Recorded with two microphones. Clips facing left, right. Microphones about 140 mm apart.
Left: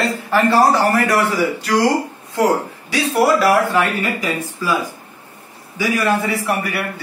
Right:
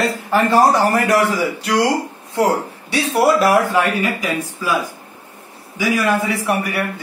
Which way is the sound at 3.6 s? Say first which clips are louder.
Even; 15° right (ahead or behind).